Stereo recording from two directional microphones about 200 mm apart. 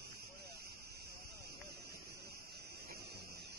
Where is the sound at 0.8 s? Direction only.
55° right (ahead or behind).